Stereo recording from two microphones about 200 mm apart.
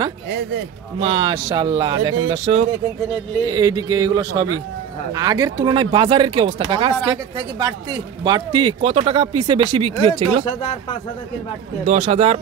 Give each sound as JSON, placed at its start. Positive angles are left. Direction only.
{"t": 0.9, "sound": "speech", "side_deg": -25}
{"t": 3.4, "sound": "speech", "side_deg": -20}
{"t": 11.8, "sound": "speech", "side_deg": -35}